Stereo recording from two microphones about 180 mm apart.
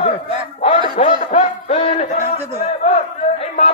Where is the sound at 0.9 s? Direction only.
45° left (ahead or behind).